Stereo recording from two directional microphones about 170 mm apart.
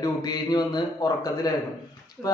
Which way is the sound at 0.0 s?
25° left (ahead or behind).